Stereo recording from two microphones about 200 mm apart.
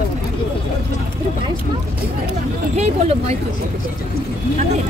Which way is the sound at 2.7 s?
30° right (ahead or behind).